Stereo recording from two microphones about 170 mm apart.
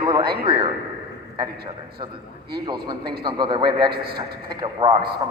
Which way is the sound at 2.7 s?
25° right (ahead or behind).